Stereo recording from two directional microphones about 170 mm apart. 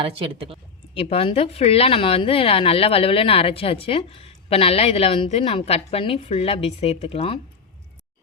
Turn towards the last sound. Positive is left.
turn(degrees=35)  # may be behind; listen again after turning